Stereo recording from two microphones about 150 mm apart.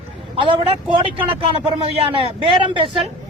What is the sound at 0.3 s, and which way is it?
Speech, 40° right (ahead or behind).